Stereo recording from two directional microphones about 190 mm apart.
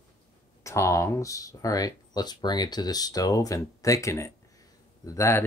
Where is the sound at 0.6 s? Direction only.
15° left (ahead or behind).